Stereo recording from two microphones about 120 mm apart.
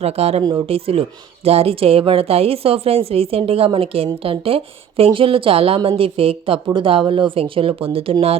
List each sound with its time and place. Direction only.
0.0 s a woman's voice: 60° right (ahead or behind)